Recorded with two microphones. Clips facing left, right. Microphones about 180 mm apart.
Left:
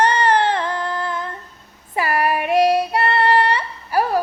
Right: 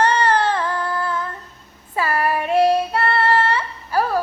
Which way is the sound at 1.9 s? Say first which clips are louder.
Left 1 dB; 15° left (ahead or behind).